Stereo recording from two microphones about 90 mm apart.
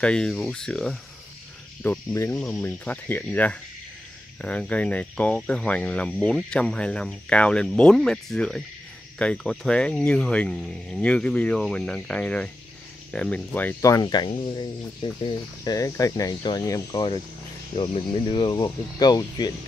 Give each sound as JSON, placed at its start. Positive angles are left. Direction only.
{"t": 0.0, "sound": "speech", "side_deg": 10}
{"t": 1.8, "sound": "speech", "side_deg": 25}
{"t": 13.7, "sound": "speech", "side_deg": 35}
{"t": 14.0, "sound": "speech", "side_deg": 55}
{"t": 15.6, "sound": "speech", "side_deg": 40}
{"t": 17.7, "sound": "speech", "side_deg": 65}
{"t": 18.6, "sound": "speech", "side_deg": 45}